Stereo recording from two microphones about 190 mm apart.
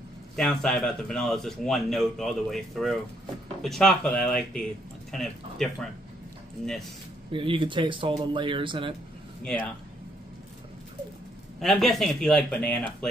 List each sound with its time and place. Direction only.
0.4 s speech: centre (ahead or behind)
7.3 s speech: 25° right (ahead or behind)
9.4 s speech: 5° left (ahead or behind)
11.6 s speech: centre (ahead or behind)